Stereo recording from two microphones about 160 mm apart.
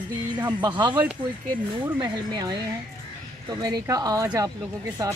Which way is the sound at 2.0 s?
25° right (ahead or behind).